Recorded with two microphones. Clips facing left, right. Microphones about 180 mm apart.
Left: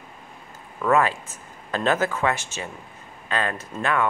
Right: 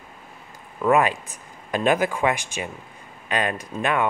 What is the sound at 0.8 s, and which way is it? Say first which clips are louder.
Speech: right 1 dB; 15° right (ahead or behind).